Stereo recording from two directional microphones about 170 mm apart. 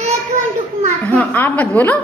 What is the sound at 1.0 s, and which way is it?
A woman's voice, 10° left (ahead or behind).